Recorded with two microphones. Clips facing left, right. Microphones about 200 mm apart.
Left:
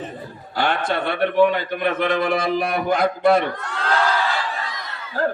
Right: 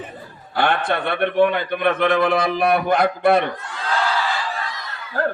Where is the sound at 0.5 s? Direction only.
55° right (ahead or behind).